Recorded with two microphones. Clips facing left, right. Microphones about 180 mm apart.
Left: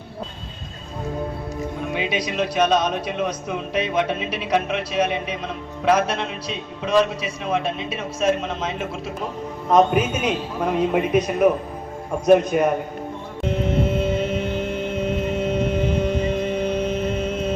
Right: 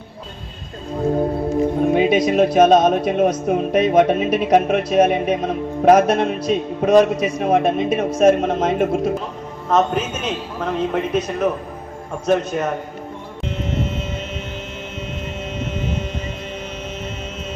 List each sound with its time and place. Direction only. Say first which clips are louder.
1.8 s speech: right 9 dB; 45° right (ahead or behind)
9.6 s a man's voice: left 1 dB; 10° left (ahead or behind)